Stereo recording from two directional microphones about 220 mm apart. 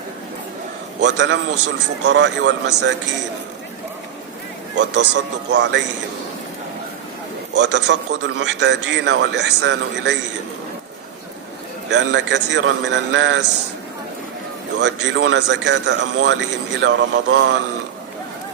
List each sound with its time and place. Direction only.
1.0 s speech: 55° right (ahead or behind)
5.5 s speech: 50° right (ahead or behind)
7.5 s speech: 50° right (ahead or behind)
11.9 s speech: 55° right (ahead or behind)
14.8 s speech: 55° right (ahead or behind)